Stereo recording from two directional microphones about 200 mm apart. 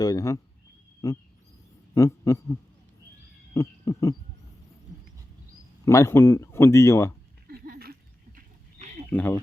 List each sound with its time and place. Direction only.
0.0 s speech: 20° left (ahead or behind)
3.5 s owl: 15° left (ahead or behind)
5.8 s speech: 15° left (ahead or behind)
7.4 s a sound: 50° right (ahead or behind)
8.4 s a sound: 40° right (ahead or behind)
9.0 s speech: 10° left (ahead or behind)